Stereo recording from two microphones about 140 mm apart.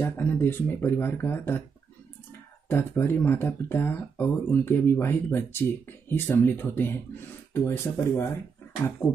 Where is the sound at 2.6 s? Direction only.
15° left (ahead or behind).